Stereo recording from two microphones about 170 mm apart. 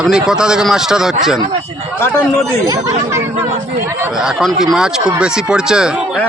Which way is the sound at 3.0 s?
15° right (ahead or behind).